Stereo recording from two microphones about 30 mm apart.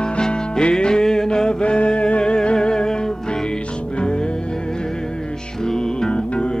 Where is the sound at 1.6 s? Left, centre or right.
Left.